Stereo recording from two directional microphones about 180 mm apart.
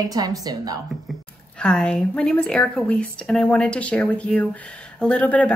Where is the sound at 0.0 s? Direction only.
20° right (ahead or behind).